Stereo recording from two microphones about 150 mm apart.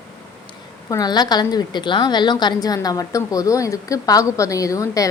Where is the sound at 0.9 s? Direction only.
25° left (ahead or behind).